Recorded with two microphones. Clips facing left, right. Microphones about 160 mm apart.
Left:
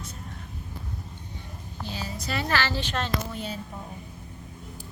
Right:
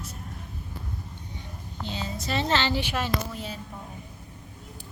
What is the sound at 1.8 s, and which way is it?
A woman's voice, 20° right (ahead or behind).